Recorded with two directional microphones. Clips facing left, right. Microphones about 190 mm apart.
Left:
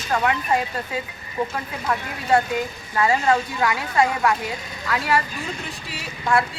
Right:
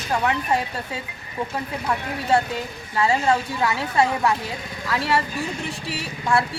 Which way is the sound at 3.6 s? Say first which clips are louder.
Even; 30° right (ahead or behind).